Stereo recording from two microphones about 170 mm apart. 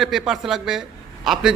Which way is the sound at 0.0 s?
Centre (ahead or behind).